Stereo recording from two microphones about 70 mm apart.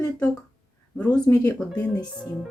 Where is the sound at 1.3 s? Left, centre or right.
Left.